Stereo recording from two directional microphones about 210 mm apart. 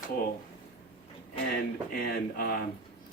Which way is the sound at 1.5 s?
45° left (ahead or behind).